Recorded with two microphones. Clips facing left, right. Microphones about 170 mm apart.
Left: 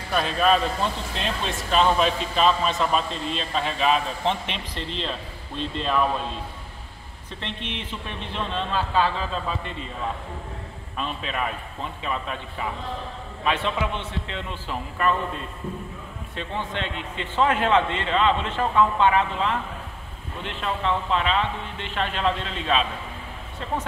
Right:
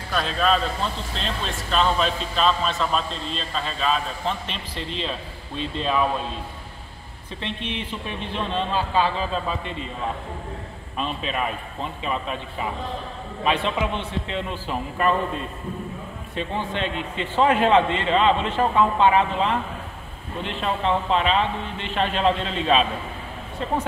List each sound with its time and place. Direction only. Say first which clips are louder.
0.1 s a man's voice: left 1 dB; 5° left (ahead or behind)
4.7 s a man's voice: right 2 dB; 10° right (ahead or behind)
8.4 s a man's voice: right 2 dB; 15° right (ahead or behind)
11.0 s a man's voice: right 2 dB; 20° right (ahead or behind)
16.3 s a man's voice: right 3 dB; 10° right (ahead or behind)